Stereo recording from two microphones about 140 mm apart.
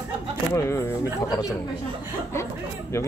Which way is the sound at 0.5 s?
20° left (ahead or behind).